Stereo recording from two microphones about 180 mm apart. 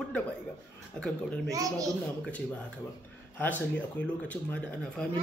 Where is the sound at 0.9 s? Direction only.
5° left (ahead or behind).